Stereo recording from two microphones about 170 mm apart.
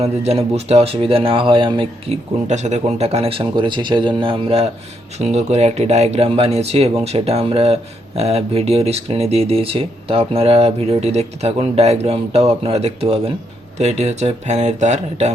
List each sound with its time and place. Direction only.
0.0 s speech: 40° right (ahead or behind)
2.5 s speech: 45° right (ahead or behind)